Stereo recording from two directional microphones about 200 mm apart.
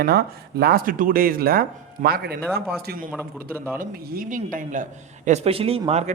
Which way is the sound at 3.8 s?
45° right (ahead or behind).